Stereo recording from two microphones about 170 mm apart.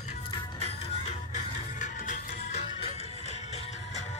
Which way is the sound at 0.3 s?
35° left (ahead or behind).